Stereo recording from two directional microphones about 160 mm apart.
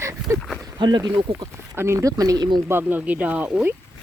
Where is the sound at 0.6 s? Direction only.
25° right (ahead or behind).